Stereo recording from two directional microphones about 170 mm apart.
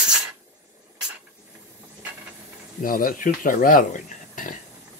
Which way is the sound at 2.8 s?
55° left (ahead or behind).